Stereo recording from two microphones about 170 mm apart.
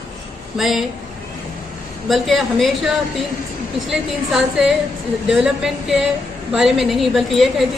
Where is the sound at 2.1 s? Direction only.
Centre (ahead or behind).